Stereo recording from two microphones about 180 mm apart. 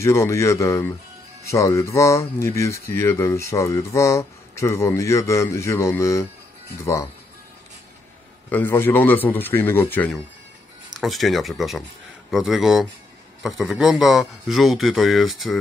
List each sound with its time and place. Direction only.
0.0 s speech: 15° left (ahead or behind)
8.5 s a man's voice: 10° left (ahead or behind)